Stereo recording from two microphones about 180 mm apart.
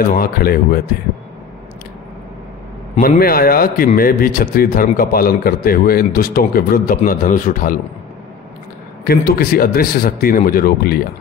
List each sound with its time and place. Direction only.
0.1 s speech: 55° left (ahead or behind)
3.0 s a man's voice: 55° left (ahead or behind)
9.0 s speech: 55° left (ahead or behind)